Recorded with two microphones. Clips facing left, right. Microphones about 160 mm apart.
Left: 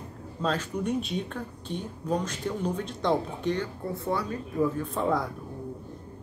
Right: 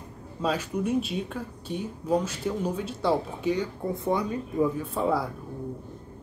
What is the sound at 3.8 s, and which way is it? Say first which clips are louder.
Speech: right 3 dB; 20° right (ahead or behind).